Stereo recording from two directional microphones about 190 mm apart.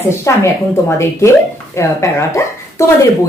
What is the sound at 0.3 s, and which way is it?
Speech, 15° left (ahead or behind).